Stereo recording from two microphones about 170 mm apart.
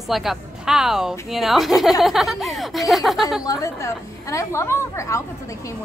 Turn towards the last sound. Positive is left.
turn(degrees=15)  # may be behind; listen again after turning